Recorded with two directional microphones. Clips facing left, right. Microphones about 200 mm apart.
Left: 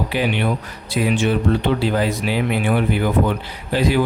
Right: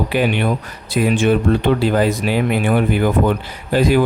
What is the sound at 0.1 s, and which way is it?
Speech, 50° right (ahead or behind).